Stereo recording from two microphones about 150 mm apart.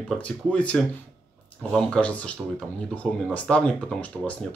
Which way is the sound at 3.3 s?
5° left (ahead or behind).